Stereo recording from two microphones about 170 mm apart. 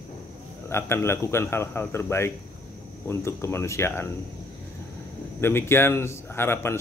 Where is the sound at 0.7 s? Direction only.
15° left (ahead or behind).